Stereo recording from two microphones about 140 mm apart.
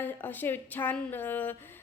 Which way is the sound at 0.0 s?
15° left (ahead or behind).